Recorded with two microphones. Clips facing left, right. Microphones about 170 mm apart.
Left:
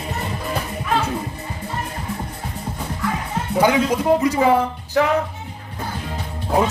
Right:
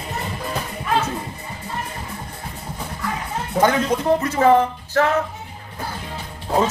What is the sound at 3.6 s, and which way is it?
Speech, 10° left (ahead or behind).